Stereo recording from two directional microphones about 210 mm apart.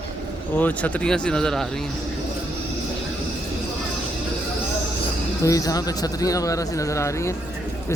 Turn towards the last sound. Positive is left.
turn(degrees=15)  # may be behind; listen again after turning